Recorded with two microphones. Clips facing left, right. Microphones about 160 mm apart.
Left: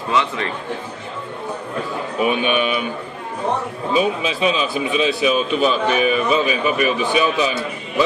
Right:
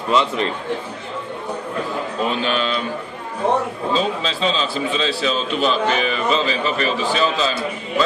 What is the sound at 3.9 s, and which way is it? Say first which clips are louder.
A man's voice: left 3 dB; 15° left (ahead or behind).